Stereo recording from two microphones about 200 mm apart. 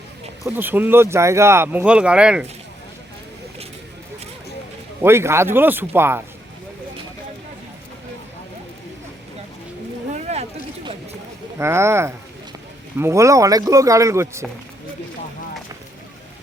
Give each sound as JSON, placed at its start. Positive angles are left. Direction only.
{"t": 0.4, "sound": "speech", "side_deg": -10}
{"t": 5.0, "sound": "speech", "side_deg": -10}
{"t": 10.1, "sound": "a sound", "side_deg": -35}
{"t": 11.5, "sound": "speech", "side_deg": -15}